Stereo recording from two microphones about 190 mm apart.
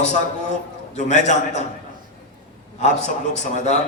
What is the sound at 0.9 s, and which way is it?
Speech, 40° left (ahead or behind).